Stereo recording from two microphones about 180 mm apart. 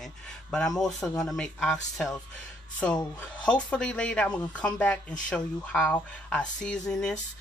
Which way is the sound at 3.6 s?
5° left (ahead or behind).